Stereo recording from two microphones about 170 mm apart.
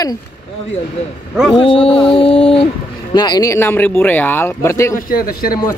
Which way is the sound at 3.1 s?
25° left (ahead or behind).